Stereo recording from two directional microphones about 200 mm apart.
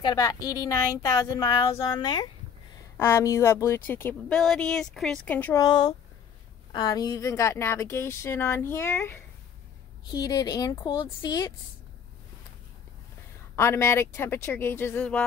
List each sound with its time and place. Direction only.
0.0 s speech: 20° left (ahead or behind)
13.6 s speech: 15° left (ahead or behind)